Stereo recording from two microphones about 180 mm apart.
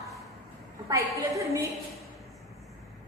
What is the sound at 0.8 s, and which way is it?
Speech, 15° right (ahead or behind).